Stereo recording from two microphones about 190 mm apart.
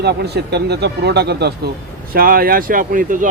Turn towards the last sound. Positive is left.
turn(degrees=-45)  # may be behind; listen again after turning